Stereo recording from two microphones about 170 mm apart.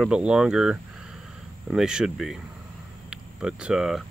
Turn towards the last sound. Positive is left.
turn(degrees=0)  # may be behind; listen again after turning